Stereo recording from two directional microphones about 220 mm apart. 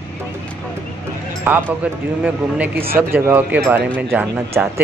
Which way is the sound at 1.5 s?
10° right (ahead or behind).